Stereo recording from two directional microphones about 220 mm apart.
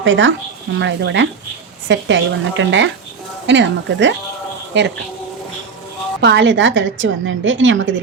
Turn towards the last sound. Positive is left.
turn(degrees=-60)  # may be behind; listen again after turning